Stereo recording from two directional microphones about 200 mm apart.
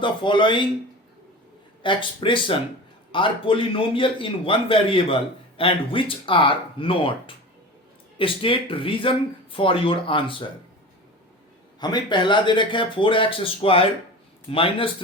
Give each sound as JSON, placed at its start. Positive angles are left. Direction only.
{"t": 0.0, "sound": "a man's voice", "side_deg": 25}
{"t": 1.8, "sound": "a man's voice", "side_deg": 25}
{"t": 11.8, "sound": "a man's voice", "side_deg": 20}